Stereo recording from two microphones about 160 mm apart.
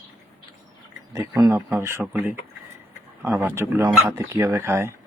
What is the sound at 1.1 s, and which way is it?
Speech, 25° right (ahead or behind).